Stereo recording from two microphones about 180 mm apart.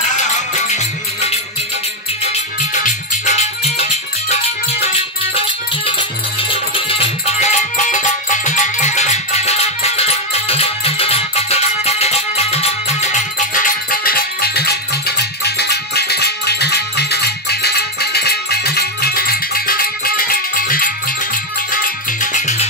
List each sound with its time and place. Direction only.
0.7 s music: 35° left (ahead or behind)
2.7 s music: 40° left (ahead or behind)
6.7 s music: 30° left (ahead or behind)